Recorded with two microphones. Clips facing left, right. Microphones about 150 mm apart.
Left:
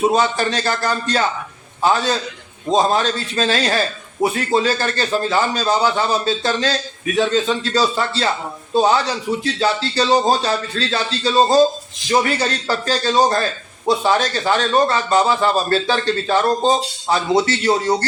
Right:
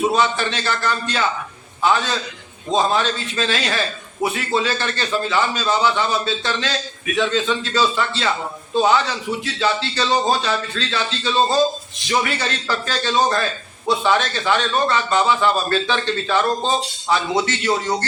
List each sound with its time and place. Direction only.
0.1 s a man's voice: 40° left (ahead or behind)